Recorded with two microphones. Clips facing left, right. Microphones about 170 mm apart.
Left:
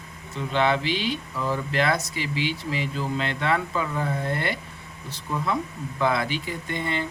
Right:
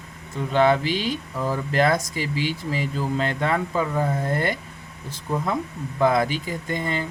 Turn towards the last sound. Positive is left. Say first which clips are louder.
# right 2 dB
turn(degrees=-40)  # may be behind; listen again after turning